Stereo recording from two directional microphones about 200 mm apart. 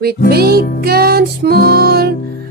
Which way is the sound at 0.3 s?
50° right (ahead or behind).